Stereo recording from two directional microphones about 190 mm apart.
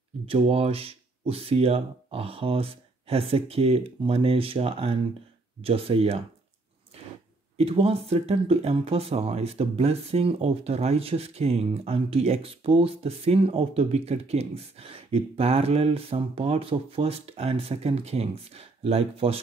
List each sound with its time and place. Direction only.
0.3 s speech: 30° right (ahead or behind)
6.9 s a sound: 30° right (ahead or behind)
7.5 s speech: 30° right (ahead or behind)